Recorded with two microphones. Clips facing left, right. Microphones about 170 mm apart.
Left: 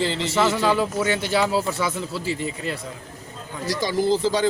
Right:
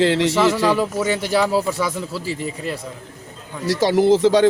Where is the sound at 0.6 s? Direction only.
5° right (ahead or behind).